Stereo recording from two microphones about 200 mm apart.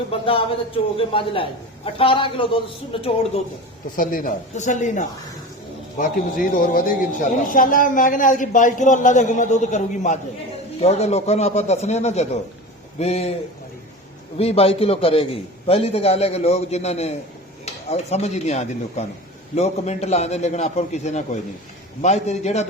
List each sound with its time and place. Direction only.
0.1 s a man's voice: 25° left (ahead or behind)
3.9 s speech: 45° left (ahead or behind)
14.3 s speech: 30° left (ahead or behind)